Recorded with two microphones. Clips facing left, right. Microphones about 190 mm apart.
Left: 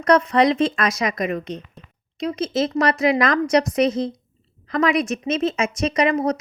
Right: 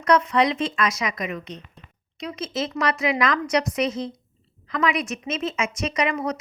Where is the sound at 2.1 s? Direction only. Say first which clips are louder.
Left 7 dB; 30° left (ahead or behind).